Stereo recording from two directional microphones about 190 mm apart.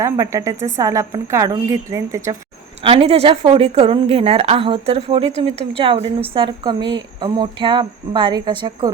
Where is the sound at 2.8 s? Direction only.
30° right (ahead or behind).